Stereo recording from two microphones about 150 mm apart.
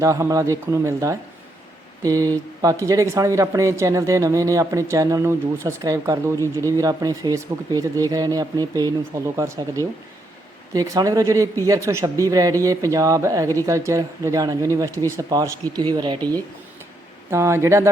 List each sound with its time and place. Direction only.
0.0 s speech: 20° right (ahead or behind)
17.3 s speech: 20° right (ahead or behind)